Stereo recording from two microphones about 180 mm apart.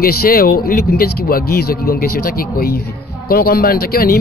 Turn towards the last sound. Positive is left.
turn(degrees=55)  # may be behind; listen again after turning